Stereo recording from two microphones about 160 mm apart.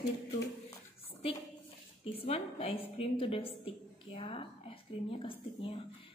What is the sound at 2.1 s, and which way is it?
A woman's voice, 40° left (ahead or behind).